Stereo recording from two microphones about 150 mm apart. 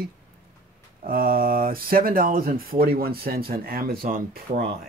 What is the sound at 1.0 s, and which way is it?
Speech, 75° right (ahead or behind).